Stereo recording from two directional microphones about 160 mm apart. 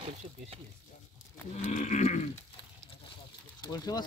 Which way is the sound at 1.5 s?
50° left (ahead or behind).